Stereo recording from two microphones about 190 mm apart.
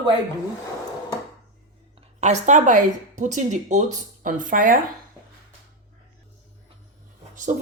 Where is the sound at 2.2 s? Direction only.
40° right (ahead or behind).